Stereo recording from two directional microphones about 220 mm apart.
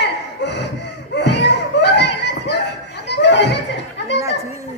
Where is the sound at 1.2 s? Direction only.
50° left (ahead or behind).